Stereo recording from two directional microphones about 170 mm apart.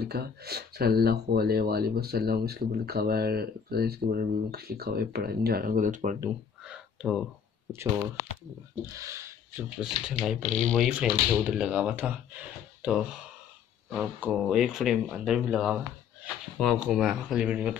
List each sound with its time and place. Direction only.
0.0 s speech: 70° right (ahead or behind); by 6.1 s 50° right (ahead or behind)
6.6 s crow: 5° right (ahead or behind)
8.9 s speech: 15° right (ahead or behind)
9.8 s speech: 5° right (ahead or behind)